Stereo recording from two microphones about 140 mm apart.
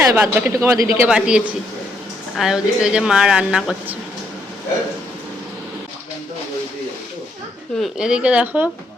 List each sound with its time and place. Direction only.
0.1 s speech: 15° right (ahead or behind)
0.9 s a woman's voice: 10° right (ahead or behind)
7.8 s speech: 5° right (ahead or behind)